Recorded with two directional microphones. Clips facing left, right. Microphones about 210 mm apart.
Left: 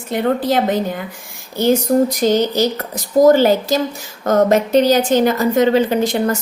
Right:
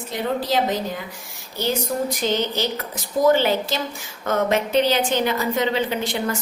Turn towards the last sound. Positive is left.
turn(degrees=40)  # may be behind; listen again after turning